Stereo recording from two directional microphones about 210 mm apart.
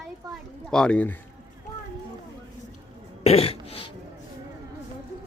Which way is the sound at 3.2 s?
30° left (ahead or behind).